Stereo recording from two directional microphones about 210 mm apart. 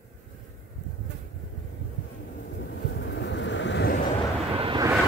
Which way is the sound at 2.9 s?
55° left (ahead or behind).